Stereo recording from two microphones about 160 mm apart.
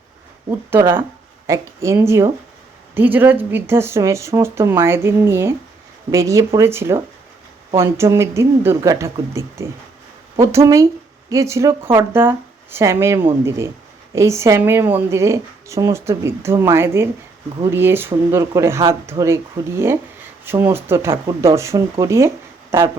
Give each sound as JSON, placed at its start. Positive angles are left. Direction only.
{"t": 0.7, "sound": "speech", "side_deg": -15}
{"t": 20.4, "sound": "speech", "side_deg": -15}